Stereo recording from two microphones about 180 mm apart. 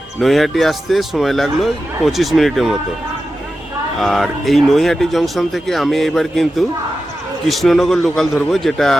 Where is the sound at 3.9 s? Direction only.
Centre (ahead or behind).